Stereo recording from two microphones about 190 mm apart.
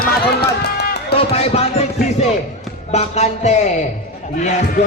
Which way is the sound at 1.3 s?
35° left (ahead or behind).